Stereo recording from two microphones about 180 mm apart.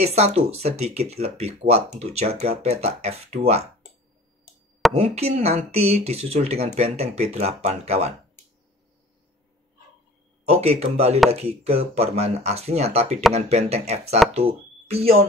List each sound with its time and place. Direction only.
0.0 s speech: 35° right (ahead or behind)
4.9 s speech: 35° right (ahead or behind)
10.5 s speech: 35° right (ahead or behind)